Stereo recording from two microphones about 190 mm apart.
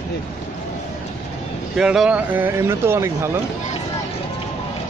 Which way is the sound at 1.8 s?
5° right (ahead or behind).